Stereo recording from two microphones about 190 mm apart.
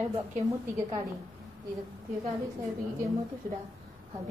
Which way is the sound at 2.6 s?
15° right (ahead or behind).